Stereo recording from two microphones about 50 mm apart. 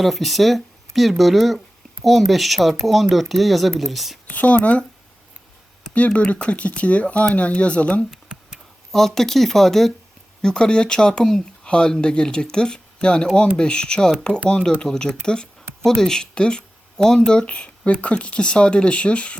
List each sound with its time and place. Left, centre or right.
0.0 s speech: centre
4.3 s speech: left
6.1 s speech: left
8.9 s speech: centre
17.4 s speech: left